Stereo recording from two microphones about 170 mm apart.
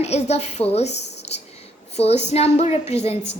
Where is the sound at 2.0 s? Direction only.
40° left (ahead or behind).